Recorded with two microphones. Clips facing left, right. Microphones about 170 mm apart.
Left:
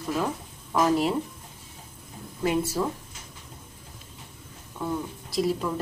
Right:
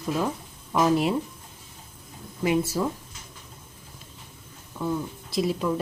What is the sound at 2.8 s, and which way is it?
Speech, 5° right (ahead or behind).